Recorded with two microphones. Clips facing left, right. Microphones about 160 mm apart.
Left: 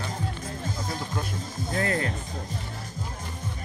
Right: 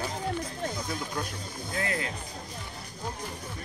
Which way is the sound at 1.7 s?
40° left (ahead or behind).